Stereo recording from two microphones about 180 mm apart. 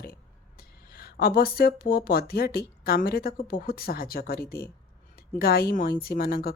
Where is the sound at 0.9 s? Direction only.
55° left (ahead or behind).